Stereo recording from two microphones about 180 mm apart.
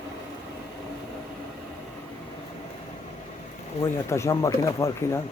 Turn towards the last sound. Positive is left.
turn(degrees=15)  # may be behind; listen again after turning